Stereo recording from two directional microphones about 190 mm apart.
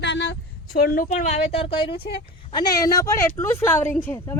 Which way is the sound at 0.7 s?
50° left (ahead or behind).